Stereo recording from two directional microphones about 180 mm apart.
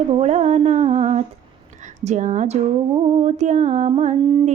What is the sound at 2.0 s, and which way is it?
Music, 40° right (ahead or behind).